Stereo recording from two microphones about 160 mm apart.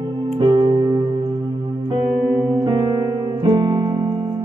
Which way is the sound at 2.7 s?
30° right (ahead or behind).